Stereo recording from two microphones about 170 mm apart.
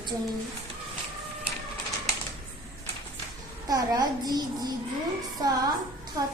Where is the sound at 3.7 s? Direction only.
20° right (ahead or behind).